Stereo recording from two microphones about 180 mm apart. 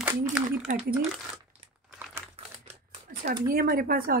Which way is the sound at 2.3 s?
35° right (ahead or behind).